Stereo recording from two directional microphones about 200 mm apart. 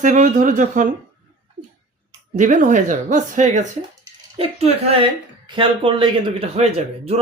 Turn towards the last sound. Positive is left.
turn(degrees=-30)  # may be behind; listen again after turning